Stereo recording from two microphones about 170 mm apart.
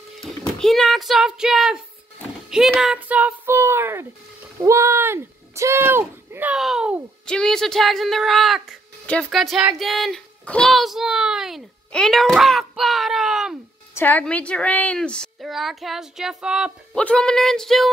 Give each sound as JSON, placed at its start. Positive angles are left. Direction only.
{"t": 0.6, "sound": "speech", "side_deg": 0}
{"t": 13.9, "sound": "speech", "side_deg": 10}